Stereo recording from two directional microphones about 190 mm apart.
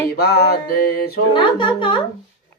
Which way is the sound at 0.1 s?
55° left (ahead or behind).